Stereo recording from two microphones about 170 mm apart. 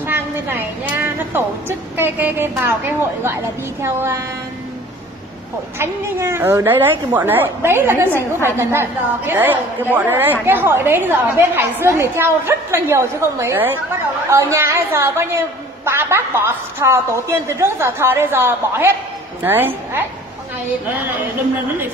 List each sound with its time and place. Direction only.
0.0 s a woman's voice: 10° right (ahead or behind)
5.8 s a woman's voice: 15° right (ahead or behind)